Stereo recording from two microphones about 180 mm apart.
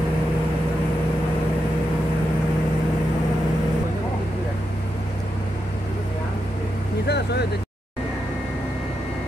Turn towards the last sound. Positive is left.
turn(degrees=70)  # may be behind; listen again after turning